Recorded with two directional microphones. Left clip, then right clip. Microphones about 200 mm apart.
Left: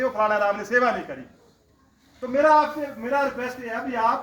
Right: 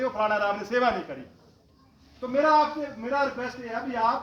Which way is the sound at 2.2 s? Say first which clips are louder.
Left 3 dB; 25° left (ahead or behind).